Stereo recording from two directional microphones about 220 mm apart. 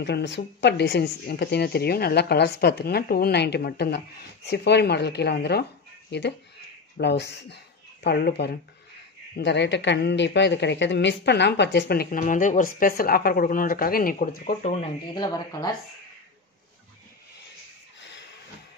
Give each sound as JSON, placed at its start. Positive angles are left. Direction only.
{"t": 0.0, "sound": "speech", "side_deg": 50}
{"t": 15.1, "sound": "speech", "side_deg": 20}